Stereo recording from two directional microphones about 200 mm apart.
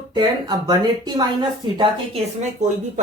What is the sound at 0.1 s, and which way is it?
Speech, 20° right (ahead or behind).